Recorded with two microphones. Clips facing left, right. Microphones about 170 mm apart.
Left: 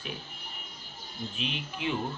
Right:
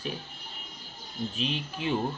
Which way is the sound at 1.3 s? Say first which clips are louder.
Right 2 dB; 35° right (ahead or behind).